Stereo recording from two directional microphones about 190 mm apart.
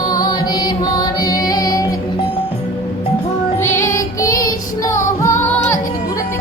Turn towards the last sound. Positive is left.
turn(degrees=15)  # may be behind; listen again after turning